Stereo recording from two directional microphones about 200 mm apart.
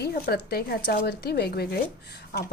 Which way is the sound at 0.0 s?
50° left (ahead or behind).